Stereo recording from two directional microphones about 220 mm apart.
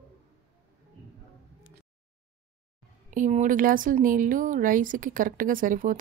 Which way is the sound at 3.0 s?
35° right (ahead or behind).